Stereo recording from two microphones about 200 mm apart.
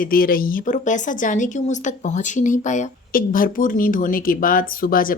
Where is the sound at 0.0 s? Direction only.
45° left (ahead or behind).